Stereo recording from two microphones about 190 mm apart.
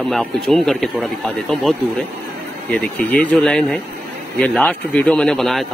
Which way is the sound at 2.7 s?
5° left (ahead or behind).